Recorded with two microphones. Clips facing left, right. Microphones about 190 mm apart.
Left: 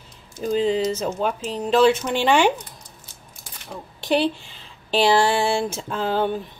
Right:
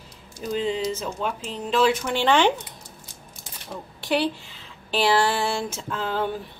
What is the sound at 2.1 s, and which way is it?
Speech, 10° left (ahead or behind).